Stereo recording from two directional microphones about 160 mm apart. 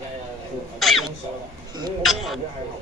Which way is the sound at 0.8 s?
Centre (ahead or behind).